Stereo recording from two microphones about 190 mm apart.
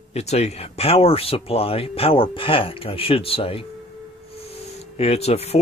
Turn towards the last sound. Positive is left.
turn(degrees=35)  # may be behind; listen again after turning